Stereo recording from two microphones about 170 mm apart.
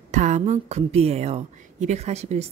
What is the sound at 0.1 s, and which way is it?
A woman's voice, 45° right (ahead or behind).